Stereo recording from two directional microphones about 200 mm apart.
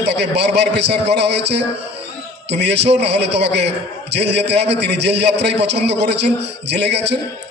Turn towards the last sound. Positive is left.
turn(degrees=-60)  # may be behind; listen again after turning